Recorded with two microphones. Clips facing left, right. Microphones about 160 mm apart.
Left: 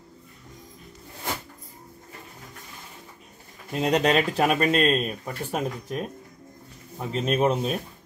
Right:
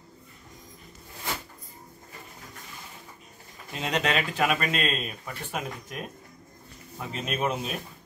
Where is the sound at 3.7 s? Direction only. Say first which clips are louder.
Left 6 dB; 40° left (ahead or behind).